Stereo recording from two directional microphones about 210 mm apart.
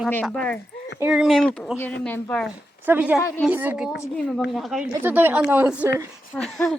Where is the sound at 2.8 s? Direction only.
10° right (ahead or behind).